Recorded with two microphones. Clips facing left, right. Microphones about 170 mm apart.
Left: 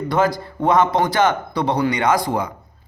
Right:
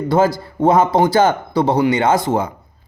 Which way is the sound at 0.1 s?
30° right (ahead or behind).